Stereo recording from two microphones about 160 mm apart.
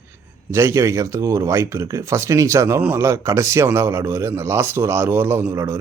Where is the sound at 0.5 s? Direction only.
15° right (ahead or behind).